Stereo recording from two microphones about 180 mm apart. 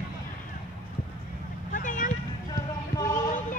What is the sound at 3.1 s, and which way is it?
Music, 45° left (ahead or behind).